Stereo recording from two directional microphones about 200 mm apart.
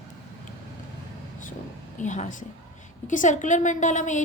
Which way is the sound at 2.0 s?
40° left (ahead or behind).